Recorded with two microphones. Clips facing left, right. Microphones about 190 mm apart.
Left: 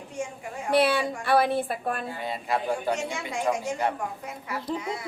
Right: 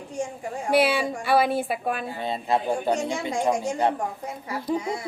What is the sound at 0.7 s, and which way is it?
A woman's voice, centre (ahead or behind).